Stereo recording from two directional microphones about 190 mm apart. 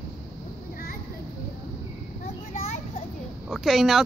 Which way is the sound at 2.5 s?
35° left (ahead or behind).